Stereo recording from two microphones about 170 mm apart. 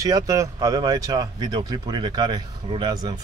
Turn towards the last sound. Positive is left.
turn(degrees=-25)  # may be behind; listen again after turning